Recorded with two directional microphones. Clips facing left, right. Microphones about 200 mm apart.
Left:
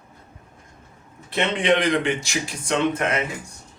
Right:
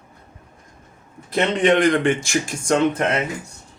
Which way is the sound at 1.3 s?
45° right (ahead or behind).